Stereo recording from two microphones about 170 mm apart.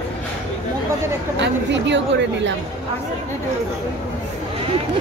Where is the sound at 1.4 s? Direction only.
90° right.